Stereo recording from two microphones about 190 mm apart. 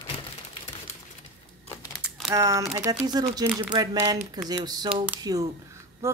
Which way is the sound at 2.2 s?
15° right (ahead or behind).